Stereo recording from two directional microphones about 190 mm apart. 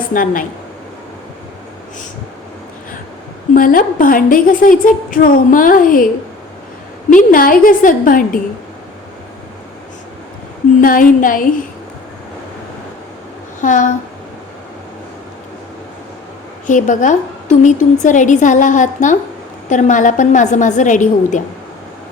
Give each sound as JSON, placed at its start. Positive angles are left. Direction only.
{"t": 0.1, "sound": "a woman's voice", "side_deg": 45}
{"t": 3.5, "sound": "a woman's voice", "side_deg": 45}
{"t": 7.1, "sound": "a woman's voice", "side_deg": 45}
{"t": 10.8, "sound": "a woman's voice", "side_deg": 45}
{"t": 13.6, "sound": "a woman's voice", "side_deg": 40}
{"t": 16.6, "sound": "a woman's voice", "side_deg": 40}